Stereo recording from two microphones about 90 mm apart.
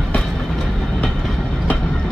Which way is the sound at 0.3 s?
Centre (ahead or behind).